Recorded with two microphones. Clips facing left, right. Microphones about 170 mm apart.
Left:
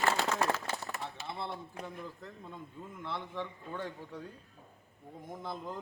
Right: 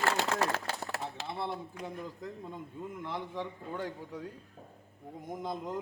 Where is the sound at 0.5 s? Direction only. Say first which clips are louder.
Right 2 dB; 65° right (ahead or behind).